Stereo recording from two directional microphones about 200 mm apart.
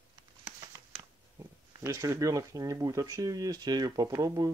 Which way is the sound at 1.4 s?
15° right (ahead or behind).